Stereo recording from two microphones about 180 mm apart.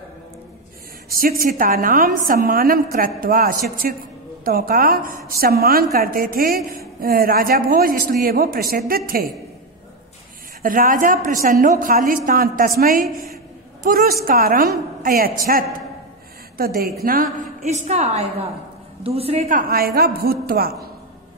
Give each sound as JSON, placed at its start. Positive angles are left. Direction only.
{"t": 1.1, "sound": "a woman's voice", "side_deg": -55}
{"t": 10.6, "sound": "a woman's voice", "side_deg": -50}
{"t": 16.5, "sound": "a man's voice", "side_deg": -55}
{"t": 17.6, "sound": "a woman's voice", "side_deg": -40}
{"t": 19.5, "sound": "a man's voice", "side_deg": -55}